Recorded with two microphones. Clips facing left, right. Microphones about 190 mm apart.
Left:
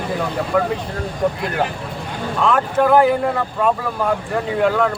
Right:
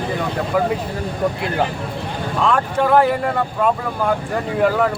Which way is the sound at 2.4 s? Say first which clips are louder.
Left 2 dB; centre (ahead or behind).